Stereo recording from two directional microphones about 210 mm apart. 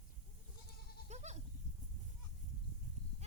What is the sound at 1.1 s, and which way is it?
Goat, 30° right (ahead or behind).